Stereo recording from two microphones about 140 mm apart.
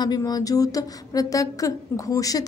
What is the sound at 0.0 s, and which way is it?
Speech, 30° left (ahead or behind).